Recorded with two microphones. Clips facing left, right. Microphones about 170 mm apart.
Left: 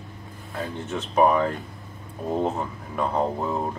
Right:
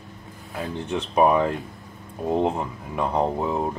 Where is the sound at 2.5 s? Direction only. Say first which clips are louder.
Right 1 dB; 15° right (ahead or behind).